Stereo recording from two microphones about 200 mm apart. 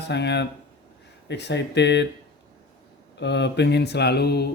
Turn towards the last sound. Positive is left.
turn(degrees=55)  # may be behind; listen again after turning